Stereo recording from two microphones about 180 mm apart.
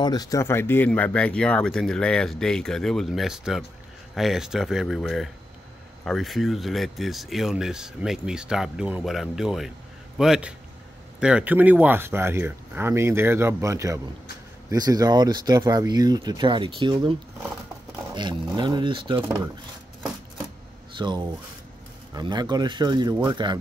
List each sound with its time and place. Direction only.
0.0 s speech: 20° left (ahead or behind); by 19.2 s 25° right (ahead or behind)
21.0 s speech: 25° right (ahead or behind)